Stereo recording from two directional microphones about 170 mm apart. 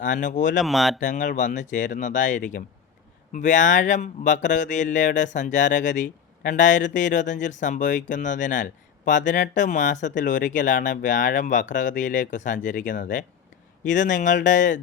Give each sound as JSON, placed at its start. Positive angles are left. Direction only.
{"t": 0.0, "sound": "speech", "side_deg": 50}
{"t": 0.6, "sound": "speech", "side_deg": 0}
{"t": 0.9, "sound": "speech", "side_deg": 50}